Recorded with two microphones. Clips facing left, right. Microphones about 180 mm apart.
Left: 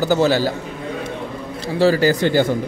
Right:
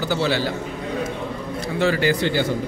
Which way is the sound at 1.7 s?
35° left (ahead or behind).